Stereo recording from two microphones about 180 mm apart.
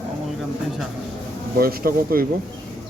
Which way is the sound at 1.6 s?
55° right (ahead or behind).